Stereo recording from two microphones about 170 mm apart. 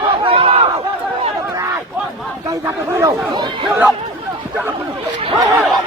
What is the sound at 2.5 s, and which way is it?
Chatter, 20° right (ahead or behind).